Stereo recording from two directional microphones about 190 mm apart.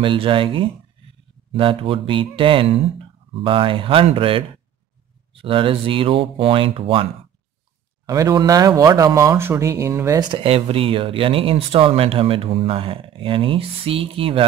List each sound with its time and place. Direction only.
0.0 s speech: 25° right (ahead or behind)
8.1 s speech: 20° right (ahead or behind)
10.3 s speech: 30° right (ahead or behind)